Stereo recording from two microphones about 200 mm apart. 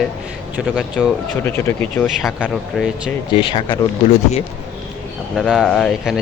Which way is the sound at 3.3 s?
25° left (ahead or behind).